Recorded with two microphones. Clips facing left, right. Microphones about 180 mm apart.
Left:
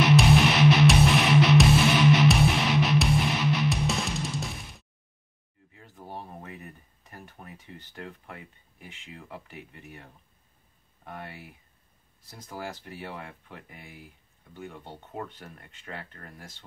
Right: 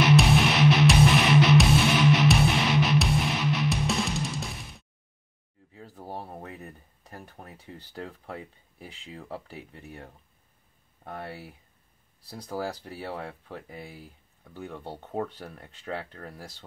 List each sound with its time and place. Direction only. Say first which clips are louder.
0.0 s music: left 1 dB; centre (ahead or behind)
5.8 s a sound: right 3 dB; 35° right (ahead or behind)
7.7 s speech: right 3 dB; 35° right (ahead or behind)
12.2 s speech: right 6 dB; 35° right (ahead or behind)